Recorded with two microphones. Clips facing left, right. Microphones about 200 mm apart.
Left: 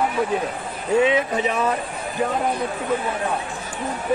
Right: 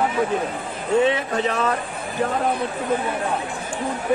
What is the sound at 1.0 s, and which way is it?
Speech, 15° left (ahead or behind).